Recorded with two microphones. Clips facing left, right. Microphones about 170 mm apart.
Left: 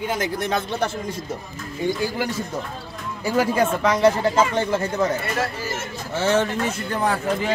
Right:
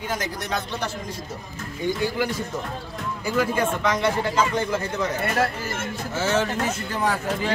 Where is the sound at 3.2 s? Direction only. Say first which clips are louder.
Left 3 dB; 35° left (ahead or behind).